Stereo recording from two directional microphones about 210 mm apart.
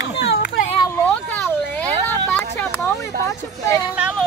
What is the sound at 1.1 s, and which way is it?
Vehicle, 10° left (ahead or behind).